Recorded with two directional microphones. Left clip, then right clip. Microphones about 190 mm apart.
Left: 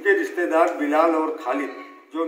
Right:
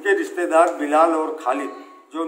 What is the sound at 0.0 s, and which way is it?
A man's voice, 10° right (ahead or behind).